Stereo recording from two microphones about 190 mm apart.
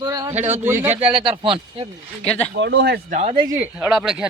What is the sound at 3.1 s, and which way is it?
Speech, 30° right (ahead or behind).